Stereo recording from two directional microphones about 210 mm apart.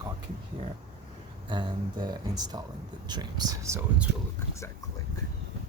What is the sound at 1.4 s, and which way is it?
Speech, 20° right (ahead or behind).